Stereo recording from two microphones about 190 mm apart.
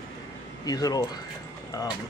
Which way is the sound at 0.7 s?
20° left (ahead or behind).